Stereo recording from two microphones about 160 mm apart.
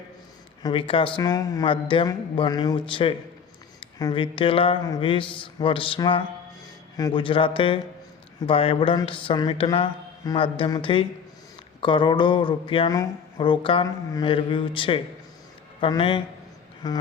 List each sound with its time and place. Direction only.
0.6 s a man's voice: 35° left (ahead or behind)